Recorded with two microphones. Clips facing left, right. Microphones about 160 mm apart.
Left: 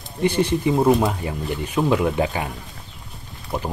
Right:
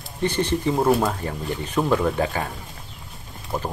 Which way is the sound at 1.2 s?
15° left (ahead or behind).